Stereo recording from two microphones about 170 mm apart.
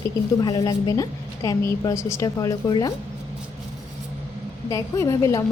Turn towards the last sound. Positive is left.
turn(degrees=20)  # may be behind; listen again after turning